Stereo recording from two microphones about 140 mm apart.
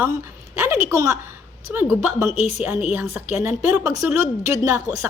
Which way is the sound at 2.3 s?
50° left (ahead or behind).